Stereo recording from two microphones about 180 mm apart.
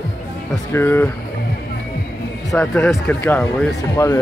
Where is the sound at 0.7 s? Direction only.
15° left (ahead or behind).